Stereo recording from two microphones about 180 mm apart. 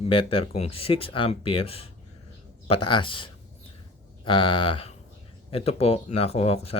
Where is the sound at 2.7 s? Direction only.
30° left (ahead or behind).